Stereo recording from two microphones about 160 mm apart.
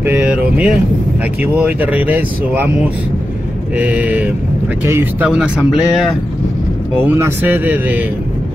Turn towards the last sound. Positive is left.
turn(degrees=-10)  # may be behind; listen again after turning